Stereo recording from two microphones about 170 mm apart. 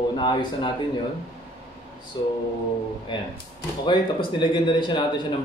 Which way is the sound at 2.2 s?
25° left (ahead or behind).